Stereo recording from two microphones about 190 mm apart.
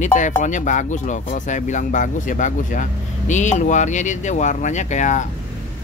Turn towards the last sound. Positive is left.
turn(degrees=40)  # may be behind; listen again after turning